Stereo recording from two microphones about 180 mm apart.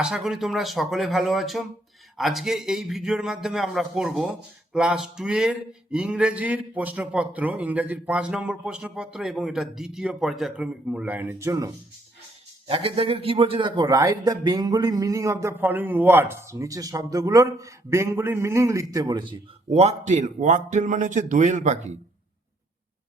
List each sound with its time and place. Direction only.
0.0 s speech: centre (ahead or behind); by 11.7 s 15° right (ahead or behind)
12.6 s a man's voice: 30° right (ahead or behind)
19.3 s speech: 35° right (ahead or behind)